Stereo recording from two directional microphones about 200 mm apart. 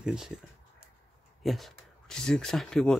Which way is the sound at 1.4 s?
Centre (ahead or behind).